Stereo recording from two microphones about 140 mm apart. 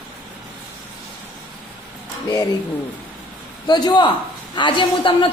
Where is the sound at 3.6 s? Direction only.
30° left (ahead or behind).